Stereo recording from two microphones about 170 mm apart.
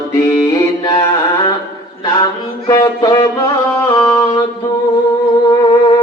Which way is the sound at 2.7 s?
20° left (ahead or behind).